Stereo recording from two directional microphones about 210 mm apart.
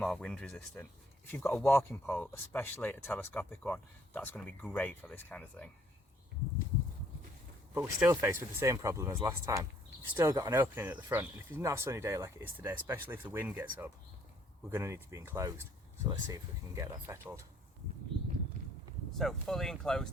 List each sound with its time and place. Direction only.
0.0 s speech: 5° left (ahead or behind)
7.7 s speech: 10° right (ahead or behind)
14.7 s speech: 10° right (ahead or behind)
18.1 s a sound: 25° right (ahead or behind)
19.1 s speech: centre (ahead or behind)